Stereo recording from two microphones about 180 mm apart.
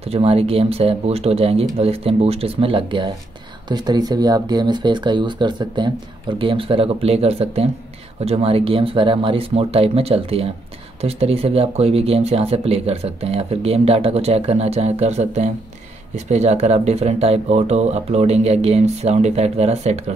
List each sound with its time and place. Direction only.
0.1 s speech: 35° right (ahead or behind)